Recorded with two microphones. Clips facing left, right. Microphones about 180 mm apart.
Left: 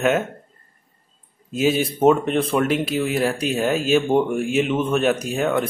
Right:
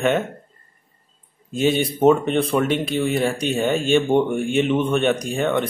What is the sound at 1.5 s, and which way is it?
Speech, 5° left (ahead or behind).